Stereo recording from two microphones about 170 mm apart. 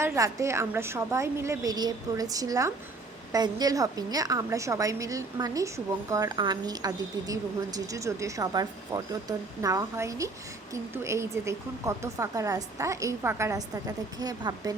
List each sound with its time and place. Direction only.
0.0 s a woman's voice: 15° right (ahead or behind)